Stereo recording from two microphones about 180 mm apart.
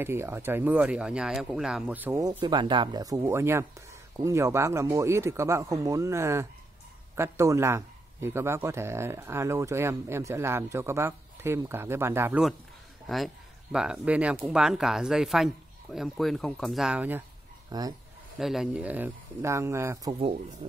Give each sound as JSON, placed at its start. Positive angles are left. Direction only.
{"t": 0.0, "sound": "speech", "side_deg": -15}
{"t": 17.6, "sound": "speech", "side_deg": -20}
{"t": 18.4, "sound": "speech", "side_deg": 0}